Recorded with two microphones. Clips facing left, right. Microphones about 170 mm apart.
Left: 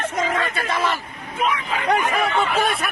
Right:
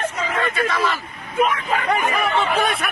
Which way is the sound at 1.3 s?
45° right (ahead or behind).